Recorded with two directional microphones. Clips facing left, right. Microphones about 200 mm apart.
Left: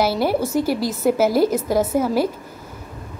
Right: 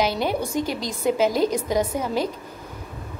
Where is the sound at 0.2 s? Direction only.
5° left (ahead or behind).